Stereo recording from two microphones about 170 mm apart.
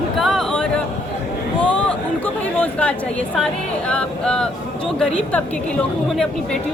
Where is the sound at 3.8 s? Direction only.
5° left (ahead or behind).